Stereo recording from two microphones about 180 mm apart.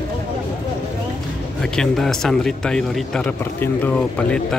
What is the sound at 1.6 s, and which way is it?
A man's voice, 5° left (ahead or behind).